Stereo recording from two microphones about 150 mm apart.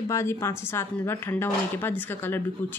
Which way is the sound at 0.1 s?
20° left (ahead or behind).